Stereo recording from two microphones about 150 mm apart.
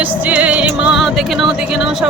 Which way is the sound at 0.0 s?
10° right (ahead or behind).